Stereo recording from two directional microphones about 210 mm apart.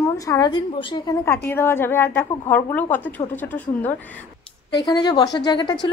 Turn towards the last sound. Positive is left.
turn(degrees=20)  # may be behind; listen again after turning